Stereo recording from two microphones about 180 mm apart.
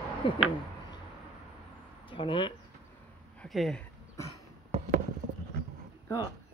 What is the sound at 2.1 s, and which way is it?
Speech, 30° left (ahead or behind).